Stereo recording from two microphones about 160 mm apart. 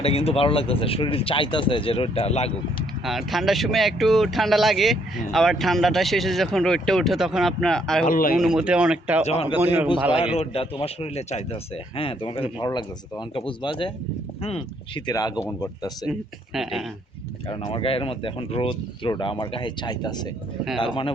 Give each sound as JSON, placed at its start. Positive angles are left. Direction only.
{"t": 0.0, "sound": "speech", "side_deg": 40}
{"t": 3.0, "sound": "speech", "side_deg": 0}
{"t": 8.0, "sound": "speech", "side_deg": 60}
{"t": 8.4, "sound": "speech", "side_deg": -5}
{"t": 9.2, "sound": "speech", "side_deg": 40}
{"t": 9.6, "sound": "speech", "side_deg": -10}
{"t": 10.3, "sound": "speech", "side_deg": 40}
{"t": 17.5, "sound": "speech", "side_deg": 35}